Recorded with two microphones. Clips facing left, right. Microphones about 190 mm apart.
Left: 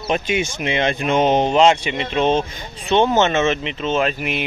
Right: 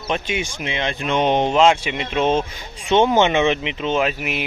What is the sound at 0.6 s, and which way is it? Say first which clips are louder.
Speech: left 4 dB; 55° left (ahead or behind).